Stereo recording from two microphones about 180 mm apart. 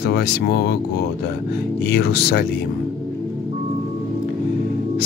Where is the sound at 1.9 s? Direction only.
60° left (ahead or behind).